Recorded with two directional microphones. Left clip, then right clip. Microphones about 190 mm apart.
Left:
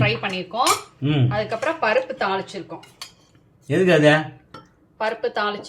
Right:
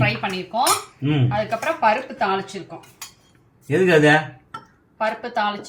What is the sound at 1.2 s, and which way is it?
A woman's voice, 60° left (ahead or behind).